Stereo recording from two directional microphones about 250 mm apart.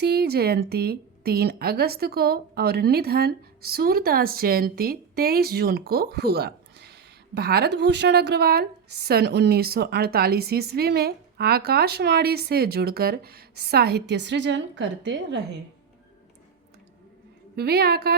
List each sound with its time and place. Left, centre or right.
0.0 s a woman's voice: right
17.6 s a woman's voice: right